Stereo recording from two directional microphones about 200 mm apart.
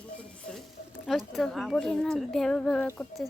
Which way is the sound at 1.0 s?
Centre (ahead or behind).